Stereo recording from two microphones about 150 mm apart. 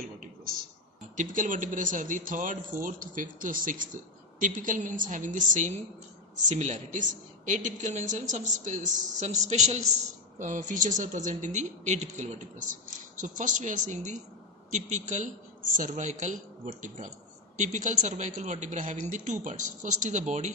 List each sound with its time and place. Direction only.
1.1 s a woman's voice: 60° right (ahead or behind)